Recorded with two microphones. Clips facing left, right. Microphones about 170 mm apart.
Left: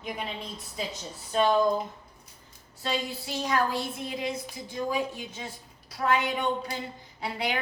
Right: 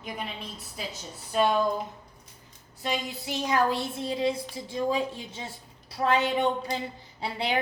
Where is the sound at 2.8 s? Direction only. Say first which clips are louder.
Even; 20° right (ahead or behind).